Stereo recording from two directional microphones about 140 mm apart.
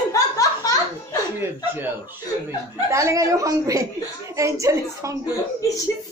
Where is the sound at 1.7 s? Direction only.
15° right (ahead or behind).